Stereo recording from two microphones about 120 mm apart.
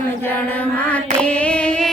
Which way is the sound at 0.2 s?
15° left (ahead or behind).